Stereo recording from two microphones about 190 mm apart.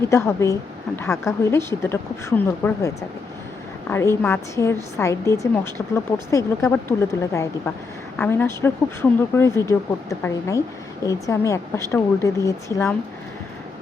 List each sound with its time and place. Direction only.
0.1 s speech: 15° left (ahead or behind)